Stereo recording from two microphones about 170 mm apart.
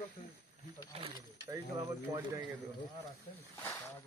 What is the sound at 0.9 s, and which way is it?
Speech, 35° right (ahead or behind).